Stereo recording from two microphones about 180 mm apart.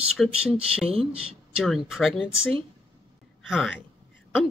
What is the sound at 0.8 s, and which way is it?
Speech, 30° right (ahead or behind).